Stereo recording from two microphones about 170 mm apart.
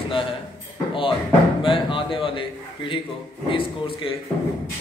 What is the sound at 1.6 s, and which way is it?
A man's voice, 30° left (ahead or behind).